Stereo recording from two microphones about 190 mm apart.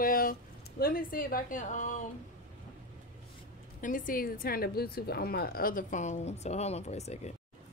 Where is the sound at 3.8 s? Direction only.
45° left (ahead or behind).